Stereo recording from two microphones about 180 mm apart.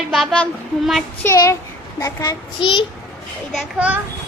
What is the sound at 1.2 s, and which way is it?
A child's voice, 15° left (ahead or behind).